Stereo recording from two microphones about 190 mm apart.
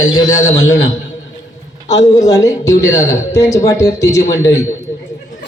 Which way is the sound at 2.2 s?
20° left (ahead or behind).